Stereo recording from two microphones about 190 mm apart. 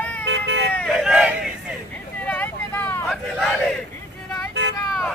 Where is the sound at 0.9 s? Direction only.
5° right (ahead or behind).